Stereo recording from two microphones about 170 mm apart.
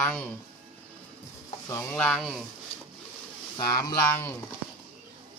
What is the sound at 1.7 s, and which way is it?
Speech, 10° left (ahead or behind).